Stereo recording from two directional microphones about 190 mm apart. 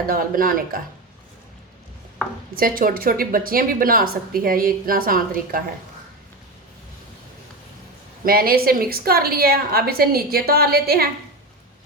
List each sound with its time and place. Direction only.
0.1 s a woman's voice: 50° right (ahead or behind)
2.6 s a woman's voice: 50° right (ahead or behind)
8.2 s a woman's voice: 50° right (ahead or behind)